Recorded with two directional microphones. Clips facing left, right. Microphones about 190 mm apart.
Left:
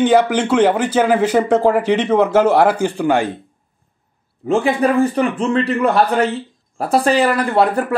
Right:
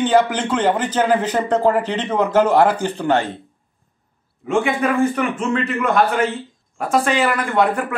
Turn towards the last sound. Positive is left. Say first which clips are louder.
# left 3 dB
turn(degrees=35)  # may be behind; listen again after turning